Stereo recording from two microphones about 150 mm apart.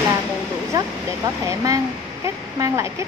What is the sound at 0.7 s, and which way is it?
Speech, 25° right (ahead or behind).